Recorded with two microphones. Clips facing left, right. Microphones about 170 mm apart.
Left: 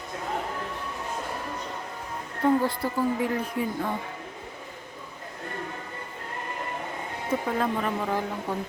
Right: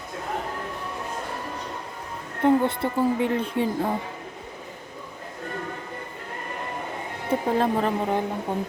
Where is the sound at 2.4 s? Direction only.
25° right (ahead or behind).